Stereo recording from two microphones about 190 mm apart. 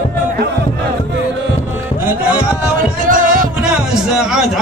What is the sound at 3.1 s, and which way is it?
Music, 45° right (ahead or behind).